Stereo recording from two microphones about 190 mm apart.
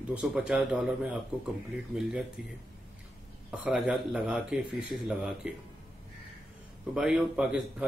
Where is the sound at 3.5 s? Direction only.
5° right (ahead or behind).